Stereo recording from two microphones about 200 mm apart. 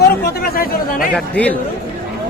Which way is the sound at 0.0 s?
50° left (ahead or behind).